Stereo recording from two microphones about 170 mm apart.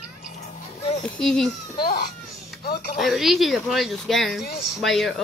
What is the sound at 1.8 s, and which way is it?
Speech, 60° left (ahead or behind).